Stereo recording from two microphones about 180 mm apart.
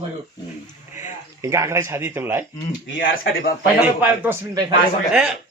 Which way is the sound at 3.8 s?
10° right (ahead or behind).